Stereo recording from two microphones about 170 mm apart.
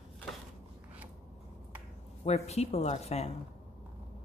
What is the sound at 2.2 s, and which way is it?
A woman's voice, 40° left (ahead or behind).